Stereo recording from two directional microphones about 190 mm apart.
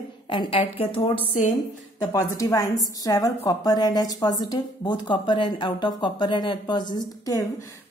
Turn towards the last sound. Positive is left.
turn(degrees=15)  # may be behind; listen again after turning